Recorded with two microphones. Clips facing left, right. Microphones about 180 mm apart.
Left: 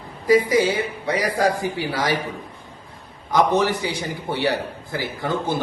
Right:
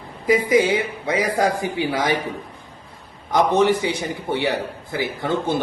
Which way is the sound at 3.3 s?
25° right (ahead or behind).